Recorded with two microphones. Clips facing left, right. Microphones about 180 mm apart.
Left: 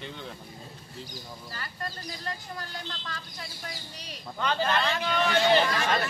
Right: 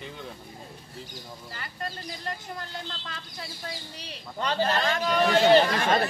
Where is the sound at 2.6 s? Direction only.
25° right (ahead or behind); by 5.4 s 40° right (ahead or behind).